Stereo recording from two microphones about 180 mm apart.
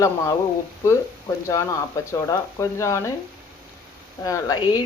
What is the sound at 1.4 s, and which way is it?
Speech, 15° left (ahead or behind).